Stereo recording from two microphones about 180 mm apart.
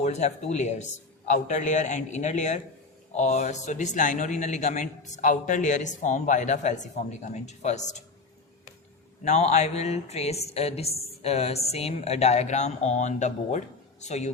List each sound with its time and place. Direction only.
0.0 s a woman's voice: 40° left (ahead or behind)
9.2 s a woman's voice: 40° left (ahead or behind)